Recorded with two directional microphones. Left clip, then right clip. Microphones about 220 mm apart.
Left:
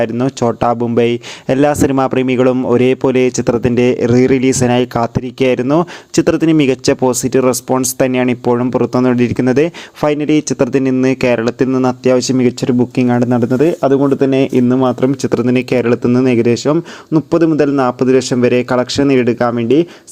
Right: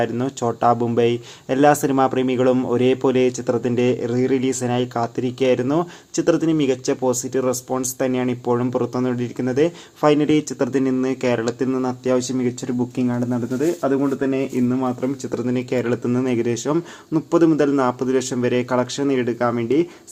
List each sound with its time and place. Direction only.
0.0 s a man's voice: 30° left (ahead or behind)